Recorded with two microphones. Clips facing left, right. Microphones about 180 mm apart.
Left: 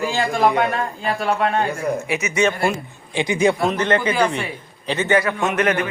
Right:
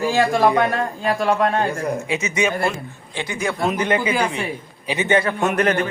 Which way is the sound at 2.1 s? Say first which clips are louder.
Left 1 dB; 25° right (ahead or behind).